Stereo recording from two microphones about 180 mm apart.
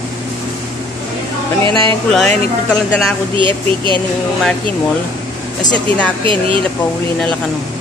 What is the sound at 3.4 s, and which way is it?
Speech, 25° right (ahead or behind).